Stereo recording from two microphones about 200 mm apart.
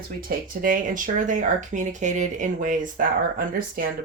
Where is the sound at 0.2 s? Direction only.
45° right (ahead or behind).